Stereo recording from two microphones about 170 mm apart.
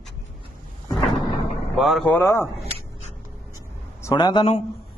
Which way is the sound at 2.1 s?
15° left (ahead or behind).